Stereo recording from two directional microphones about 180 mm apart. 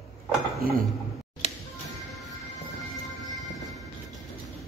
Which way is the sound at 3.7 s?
Centre (ahead or behind).